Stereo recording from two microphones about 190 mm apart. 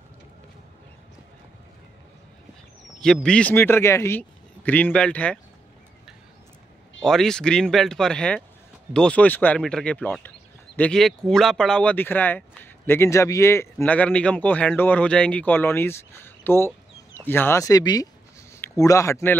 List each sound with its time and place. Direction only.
3.0 s speech: 5° left (ahead or behind)
7.0 s speech: 5° left (ahead or behind)